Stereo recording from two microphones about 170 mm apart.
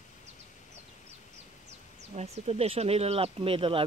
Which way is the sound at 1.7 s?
40° right (ahead or behind).